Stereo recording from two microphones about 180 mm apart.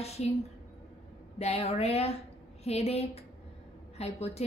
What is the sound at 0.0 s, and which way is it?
Speech, 35° left (ahead or behind).